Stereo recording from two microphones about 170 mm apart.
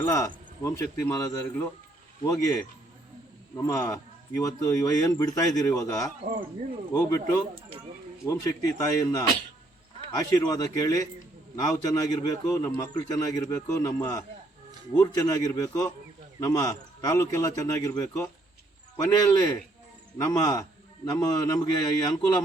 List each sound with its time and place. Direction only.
0.0 s speech: 20° left (ahead or behind)
0.8 s a man's voice: 10° left (ahead or behind)
2.2 s a man's voice: 20° left (ahead or behind)
3.6 s a man's voice: 20° left (ahead or behind)